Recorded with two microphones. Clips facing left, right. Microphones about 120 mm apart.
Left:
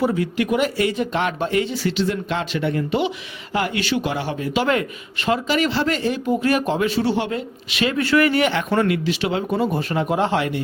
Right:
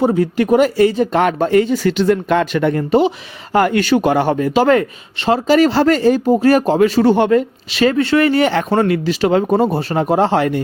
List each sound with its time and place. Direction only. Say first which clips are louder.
0.0 s speech: right 6 dB; 40° right (ahead or behind)
7.7 s speech: right 5 dB; 35° right (ahead or behind)